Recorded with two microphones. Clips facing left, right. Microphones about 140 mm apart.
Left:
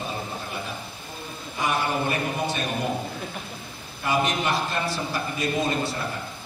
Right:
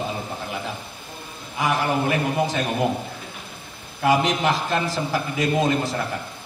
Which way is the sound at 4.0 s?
90° right.